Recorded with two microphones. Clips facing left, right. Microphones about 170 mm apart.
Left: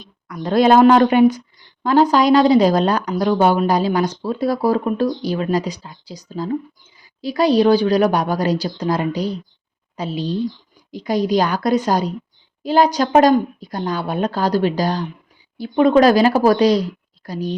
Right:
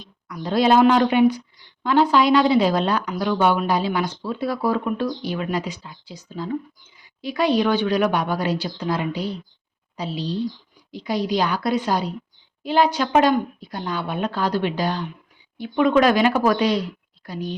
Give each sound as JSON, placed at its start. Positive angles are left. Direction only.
{"t": 0.0, "sound": "speech", "side_deg": 50}